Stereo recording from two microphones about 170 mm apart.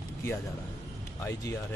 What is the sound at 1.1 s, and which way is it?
Speech, 20° left (ahead or behind).